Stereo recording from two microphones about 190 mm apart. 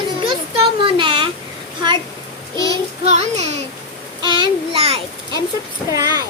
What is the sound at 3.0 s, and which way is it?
Speech, 35° right (ahead or behind).